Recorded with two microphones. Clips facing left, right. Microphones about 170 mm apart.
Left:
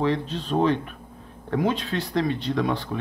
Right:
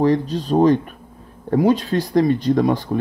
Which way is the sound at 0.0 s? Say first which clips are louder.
Right 7 dB; 40° right (ahead or behind).